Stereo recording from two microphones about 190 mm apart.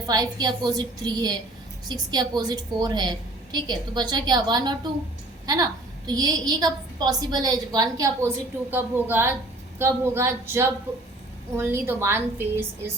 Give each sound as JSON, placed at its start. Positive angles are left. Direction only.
{"t": 0.1, "sound": "a woman's voice", "side_deg": -20}